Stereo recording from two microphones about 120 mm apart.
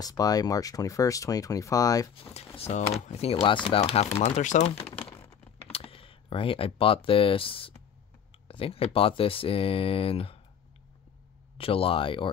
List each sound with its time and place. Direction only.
0.0 s speech: 30° left (ahead or behind)
2.5 s speech: 60° left (ahead or behind)
5.4 s typing: 55° left (ahead or behind)
8.5 s speech: 50° left (ahead or behind)
11.5 s speech: 50° left (ahead or behind)